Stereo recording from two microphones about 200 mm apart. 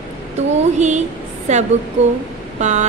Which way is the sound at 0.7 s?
35° right (ahead or behind).